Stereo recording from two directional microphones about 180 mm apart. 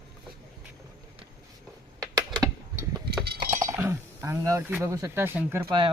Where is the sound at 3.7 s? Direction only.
15° right (ahead or behind).